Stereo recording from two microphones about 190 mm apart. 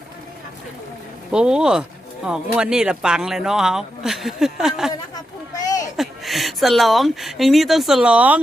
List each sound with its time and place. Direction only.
1.3 s speech: 5° right (ahead or behind)
5.1 s a sound: 20° left (ahead or behind)
6.0 s speech: centre (ahead or behind)